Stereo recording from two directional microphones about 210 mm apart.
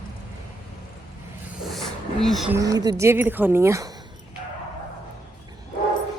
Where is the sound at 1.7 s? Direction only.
Centre (ahead or behind).